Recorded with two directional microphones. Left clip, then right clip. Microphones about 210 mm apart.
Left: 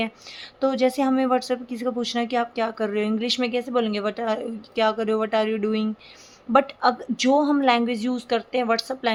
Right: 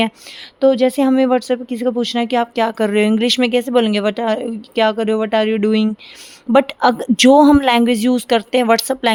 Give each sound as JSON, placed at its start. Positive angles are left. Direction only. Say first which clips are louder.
{"t": 0.6, "sound": "speech", "louder": "right 8 dB", "side_deg": -35}